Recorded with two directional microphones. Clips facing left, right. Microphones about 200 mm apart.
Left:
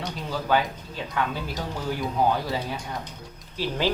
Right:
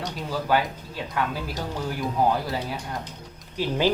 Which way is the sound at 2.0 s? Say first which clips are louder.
Right 1 dB; centre (ahead or behind).